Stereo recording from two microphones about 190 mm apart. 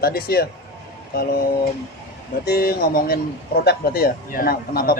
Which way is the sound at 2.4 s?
55° left (ahead or behind).